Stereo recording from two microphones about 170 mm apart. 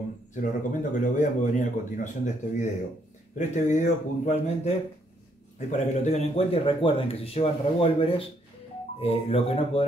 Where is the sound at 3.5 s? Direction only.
45° left (ahead or behind).